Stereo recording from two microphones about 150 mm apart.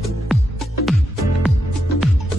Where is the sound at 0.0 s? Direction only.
Centre (ahead or behind).